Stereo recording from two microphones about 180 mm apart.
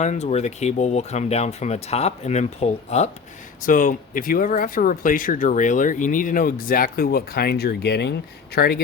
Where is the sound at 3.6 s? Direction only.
50° left (ahead or behind).